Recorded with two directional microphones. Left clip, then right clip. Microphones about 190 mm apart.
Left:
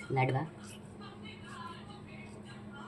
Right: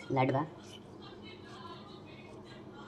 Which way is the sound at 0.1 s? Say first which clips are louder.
Right 2 dB; 25° right (ahead or behind).